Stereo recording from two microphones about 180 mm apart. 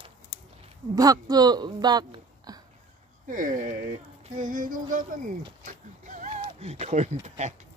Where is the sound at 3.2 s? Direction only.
45° right (ahead or behind).